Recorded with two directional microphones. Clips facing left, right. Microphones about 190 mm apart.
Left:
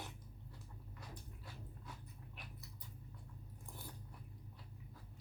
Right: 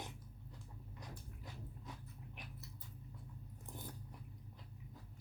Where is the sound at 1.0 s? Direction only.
20° right (ahead or behind).